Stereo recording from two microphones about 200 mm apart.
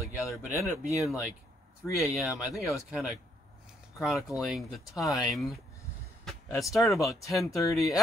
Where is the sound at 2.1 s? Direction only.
5° right (ahead or behind).